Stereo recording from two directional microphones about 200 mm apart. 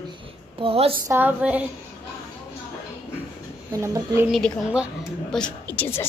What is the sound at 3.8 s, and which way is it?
Speech, 15° right (ahead or behind).